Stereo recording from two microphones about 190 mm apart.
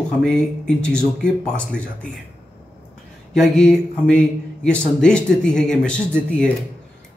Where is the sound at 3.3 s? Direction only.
Centre (ahead or behind).